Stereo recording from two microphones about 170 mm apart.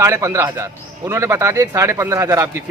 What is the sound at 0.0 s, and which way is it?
A man's voice, 15° right (ahead or behind).